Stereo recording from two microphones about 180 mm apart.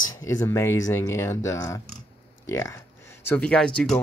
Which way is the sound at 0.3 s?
15° left (ahead or behind).